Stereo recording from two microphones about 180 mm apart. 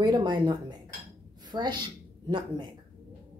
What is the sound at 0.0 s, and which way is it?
A woman's voice, 25° right (ahead or behind).